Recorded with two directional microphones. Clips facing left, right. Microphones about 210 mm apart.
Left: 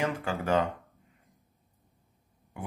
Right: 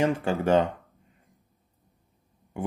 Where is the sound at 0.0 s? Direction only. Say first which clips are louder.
Right 6 dB; 25° right (ahead or behind).